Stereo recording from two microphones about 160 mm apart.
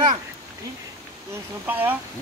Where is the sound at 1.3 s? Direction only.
10° right (ahead or behind).